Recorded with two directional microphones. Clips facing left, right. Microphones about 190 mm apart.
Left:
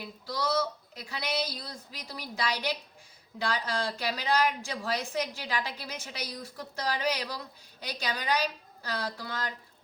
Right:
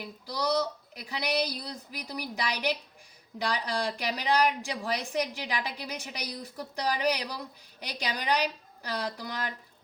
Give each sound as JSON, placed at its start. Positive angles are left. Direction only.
{"t": 0.0, "sound": "a woman's voice", "side_deg": -15}